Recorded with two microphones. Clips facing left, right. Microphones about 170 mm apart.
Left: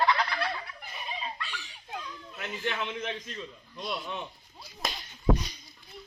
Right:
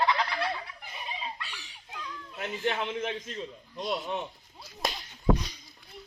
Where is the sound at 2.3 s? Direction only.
35° right (ahead or behind).